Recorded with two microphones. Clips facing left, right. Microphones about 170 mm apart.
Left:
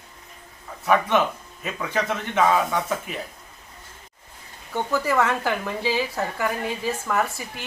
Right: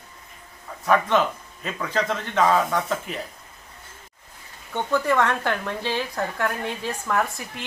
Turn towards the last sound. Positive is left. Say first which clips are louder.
# even
turn(degrees=0)  # may be behind; listen again after turning